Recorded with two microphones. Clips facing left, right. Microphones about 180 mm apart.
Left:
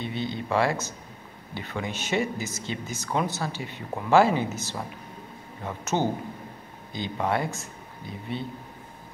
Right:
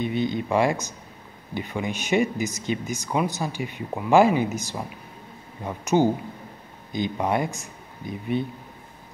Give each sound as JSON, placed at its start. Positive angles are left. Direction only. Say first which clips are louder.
{"t": 0.0, "sound": "speech", "louder": "right 6 dB", "side_deg": -15}